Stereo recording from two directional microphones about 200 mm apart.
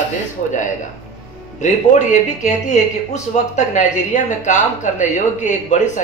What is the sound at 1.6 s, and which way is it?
Speech, 35° left (ahead or behind).